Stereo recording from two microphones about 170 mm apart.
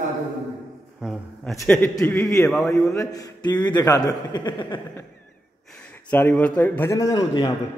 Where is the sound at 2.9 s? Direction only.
20° left (ahead or behind).